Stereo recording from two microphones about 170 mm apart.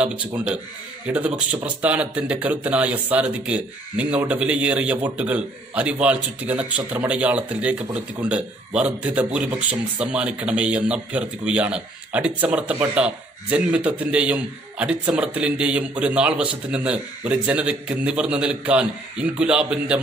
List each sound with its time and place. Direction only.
0.0 s speech: 10° right (ahead or behind)